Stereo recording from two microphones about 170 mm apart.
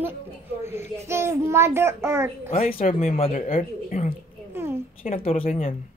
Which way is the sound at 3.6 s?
55° left (ahead or behind).